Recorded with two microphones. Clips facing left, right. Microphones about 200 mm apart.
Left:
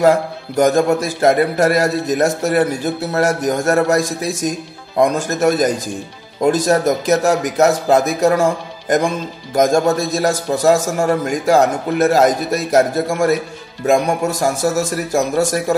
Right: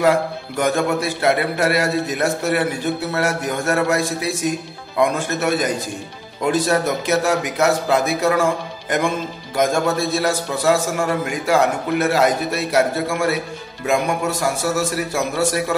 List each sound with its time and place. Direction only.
0.0 s speech: 40° left (ahead or behind)